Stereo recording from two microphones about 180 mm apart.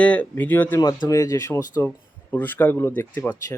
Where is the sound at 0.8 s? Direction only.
20° left (ahead or behind).